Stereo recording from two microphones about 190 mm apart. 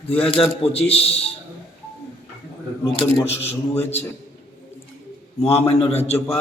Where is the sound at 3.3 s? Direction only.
35° left (ahead or behind).